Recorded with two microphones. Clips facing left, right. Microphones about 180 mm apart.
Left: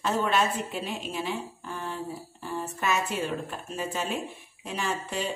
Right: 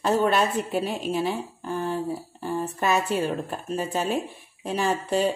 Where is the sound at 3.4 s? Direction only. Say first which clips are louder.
Right 5 dB; 40° right (ahead or behind).